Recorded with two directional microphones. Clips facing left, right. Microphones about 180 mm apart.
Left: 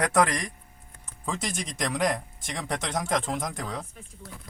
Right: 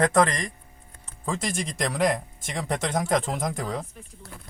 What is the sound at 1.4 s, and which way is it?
Speech, centre (ahead or behind).